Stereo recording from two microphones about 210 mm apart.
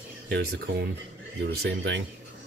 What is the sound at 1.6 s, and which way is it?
Speech, 60° right (ahead or behind).